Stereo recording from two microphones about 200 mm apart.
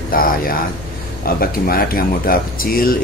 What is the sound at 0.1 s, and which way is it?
Speech, 45° left (ahead or behind).